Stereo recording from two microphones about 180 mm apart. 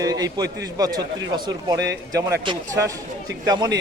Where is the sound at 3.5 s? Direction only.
25° right (ahead or behind).